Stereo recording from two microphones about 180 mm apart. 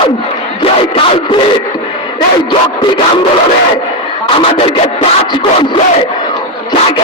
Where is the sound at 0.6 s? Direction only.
30° left (ahead or behind).